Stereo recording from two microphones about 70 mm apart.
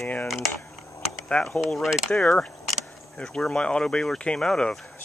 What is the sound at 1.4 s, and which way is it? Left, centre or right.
Speech, centre.